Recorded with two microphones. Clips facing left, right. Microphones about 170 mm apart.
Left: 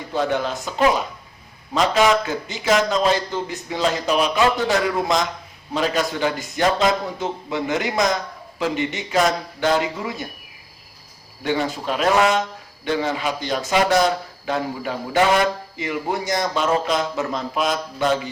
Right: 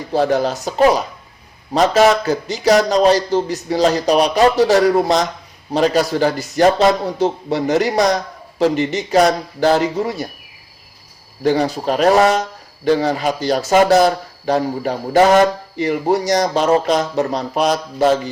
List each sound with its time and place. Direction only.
0.1 s speech: 40° right (ahead or behind)
11.4 s speech: 40° right (ahead or behind)